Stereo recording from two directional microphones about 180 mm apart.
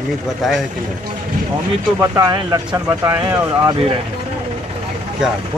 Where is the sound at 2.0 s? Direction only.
20° right (ahead or behind).